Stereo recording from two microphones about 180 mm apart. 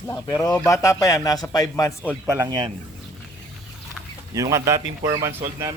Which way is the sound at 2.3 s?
20° right (ahead or behind).